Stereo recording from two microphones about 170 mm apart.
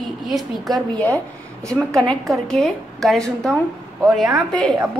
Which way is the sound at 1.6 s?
15° right (ahead or behind).